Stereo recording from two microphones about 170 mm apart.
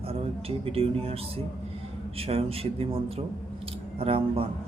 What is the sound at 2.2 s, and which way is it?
Speech, 35° right (ahead or behind).